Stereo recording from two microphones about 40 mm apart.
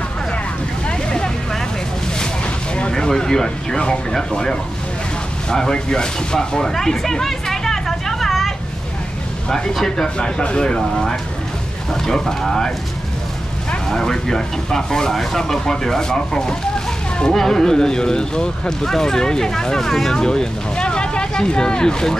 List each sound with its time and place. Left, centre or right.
0.8 s vehicle: centre
2.7 s speech: left; by 8.5 s centre
9.8 s speech: left
13.8 s speech: centre